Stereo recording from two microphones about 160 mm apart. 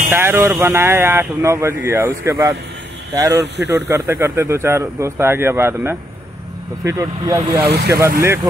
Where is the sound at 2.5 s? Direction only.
90° right.